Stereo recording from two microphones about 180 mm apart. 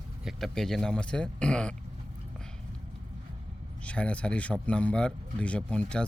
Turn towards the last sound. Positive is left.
turn(degrees=5)  # may be behind; listen again after turning